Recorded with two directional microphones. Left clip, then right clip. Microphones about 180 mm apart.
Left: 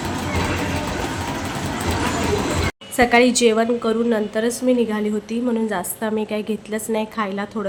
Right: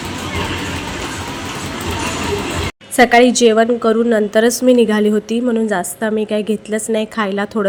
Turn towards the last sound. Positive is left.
turn(degrees=-25)  # may be behind; listen again after turning